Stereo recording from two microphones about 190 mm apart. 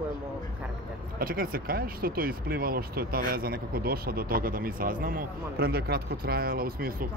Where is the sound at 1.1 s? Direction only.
50° right (ahead or behind).